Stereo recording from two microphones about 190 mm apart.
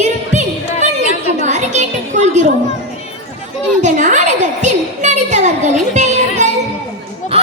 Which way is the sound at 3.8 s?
40° right (ahead or behind).